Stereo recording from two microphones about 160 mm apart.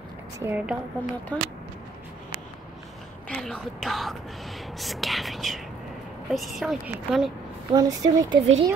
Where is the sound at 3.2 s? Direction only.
5° left (ahead or behind).